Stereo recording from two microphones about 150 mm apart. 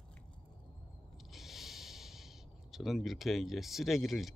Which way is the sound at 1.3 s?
Centre (ahead or behind).